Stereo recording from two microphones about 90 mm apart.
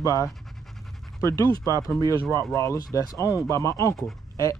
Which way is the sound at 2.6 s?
40° left (ahead or behind).